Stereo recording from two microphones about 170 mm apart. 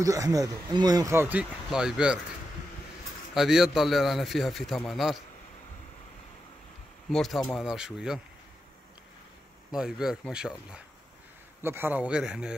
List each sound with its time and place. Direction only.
0.0 s speech: 20° right (ahead or behind)
3.3 s a man's voice: 5° right (ahead or behind)
7.1 s a man's voice: centre (ahead or behind)
9.8 s a man's voice: 5° right (ahead or behind)